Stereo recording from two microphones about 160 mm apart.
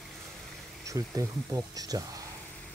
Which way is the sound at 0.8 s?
20° right (ahead or behind).